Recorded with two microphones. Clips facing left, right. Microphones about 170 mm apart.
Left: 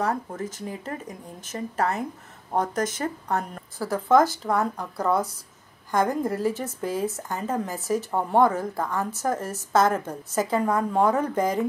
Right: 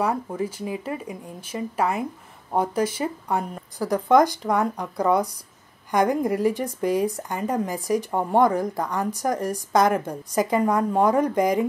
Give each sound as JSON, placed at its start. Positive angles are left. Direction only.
{"t": 0.0, "sound": "a woman's voice", "side_deg": -10}